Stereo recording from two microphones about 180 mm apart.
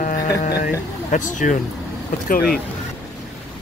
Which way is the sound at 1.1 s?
45° left (ahead or behind).